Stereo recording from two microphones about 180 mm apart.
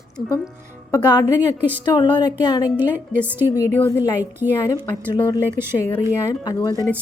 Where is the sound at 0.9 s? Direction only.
20° left (ahead or behind).